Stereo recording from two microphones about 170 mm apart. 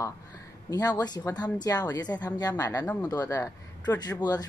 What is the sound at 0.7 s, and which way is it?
Speech, 20° left (ahead or behind).